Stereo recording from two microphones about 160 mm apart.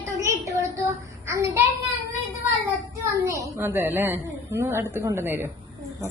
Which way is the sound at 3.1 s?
20° right (ahead or behind).